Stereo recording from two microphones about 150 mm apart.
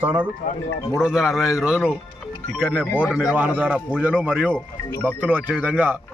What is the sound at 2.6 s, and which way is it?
A man's voice, 10° right (ahead or behind).